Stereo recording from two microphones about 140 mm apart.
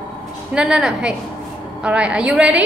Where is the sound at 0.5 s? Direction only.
5° right (ahead or behind).